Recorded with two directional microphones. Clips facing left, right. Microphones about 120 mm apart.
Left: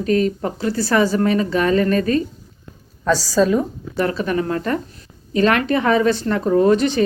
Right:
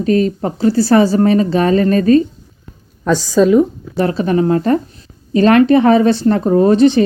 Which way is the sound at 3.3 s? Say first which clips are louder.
Right 6 dB; 15° right (ahead or behind).